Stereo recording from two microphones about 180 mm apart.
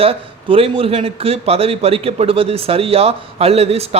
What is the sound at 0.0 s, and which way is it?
A man's voice, 30° right (ahead or behind).